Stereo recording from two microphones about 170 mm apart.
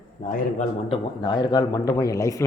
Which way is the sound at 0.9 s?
25° left (ahead or behind).